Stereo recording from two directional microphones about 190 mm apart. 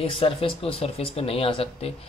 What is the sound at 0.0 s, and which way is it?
Speech, 30° left (ahead or behind).